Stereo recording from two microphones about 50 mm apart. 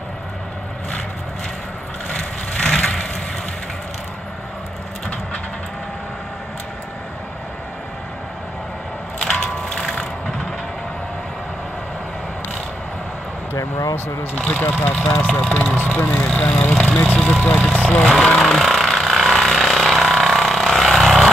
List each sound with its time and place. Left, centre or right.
2.0 s vehicle: centre
9.3 s music: centre
13.5 s speech: left
14.7 s speech: left
15.5 s speech: left
17.7 s speech: left
18.0 s speech: centre
18.6 s a sound: centre